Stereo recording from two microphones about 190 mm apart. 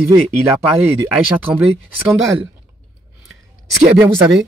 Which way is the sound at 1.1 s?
5° right (ahead or behind).